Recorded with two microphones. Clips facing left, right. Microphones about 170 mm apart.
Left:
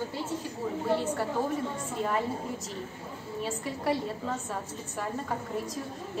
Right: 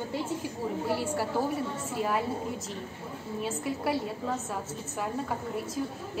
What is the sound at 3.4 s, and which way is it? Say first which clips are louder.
A woman's voice: right 2 dB; centre (ahead or behind).